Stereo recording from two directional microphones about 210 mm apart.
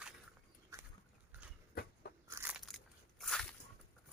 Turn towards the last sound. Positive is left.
turn(degrees=5)  # may be behind; listen again after turning